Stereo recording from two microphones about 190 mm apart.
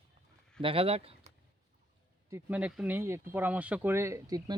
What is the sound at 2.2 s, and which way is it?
Speech, 10° right (ahead or behind).